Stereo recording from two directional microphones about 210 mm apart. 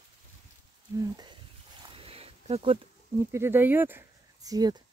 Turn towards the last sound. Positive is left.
turn(degrees=-15)  # may be behind; listen again after turning